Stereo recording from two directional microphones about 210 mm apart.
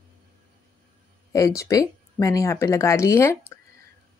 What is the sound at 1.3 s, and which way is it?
Speech, 15° left (ahead or behind).